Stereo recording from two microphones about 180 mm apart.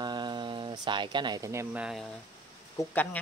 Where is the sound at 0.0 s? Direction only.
25° right (ahead or behind); by 2.0 s 5° right (ahead or behind).